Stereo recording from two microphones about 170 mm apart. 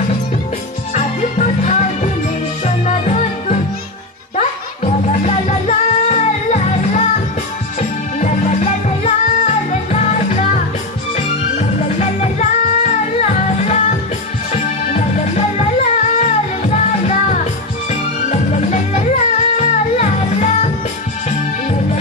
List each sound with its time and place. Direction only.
0.9 s music: 40° left (ahead or behind)
8.2 s music: 45° left (ahead or behind)
15.5 s music: 45° left (ahead or behind)